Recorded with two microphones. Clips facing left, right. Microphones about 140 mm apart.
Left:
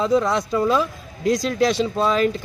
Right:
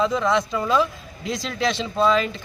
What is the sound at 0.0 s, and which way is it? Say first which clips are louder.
A man's voice: left 2 dB; 40° left (ahead or behind).